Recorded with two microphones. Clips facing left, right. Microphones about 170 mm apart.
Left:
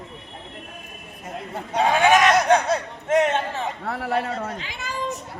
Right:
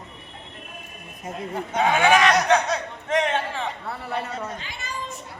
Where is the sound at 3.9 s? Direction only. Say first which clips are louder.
Left 5 dB; 90° left; by 4.7 s 75° left (ahead or behind).